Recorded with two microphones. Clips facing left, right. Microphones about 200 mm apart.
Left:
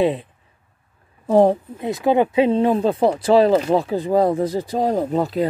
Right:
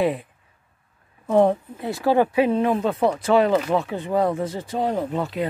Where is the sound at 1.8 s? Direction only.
20° left (ahead or behind).